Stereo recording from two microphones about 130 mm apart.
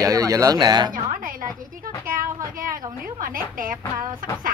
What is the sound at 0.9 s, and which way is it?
Music, 90° right.